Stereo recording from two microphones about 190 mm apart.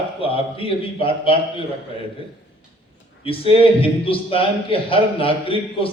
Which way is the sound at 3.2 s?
30° left (ahead or behind).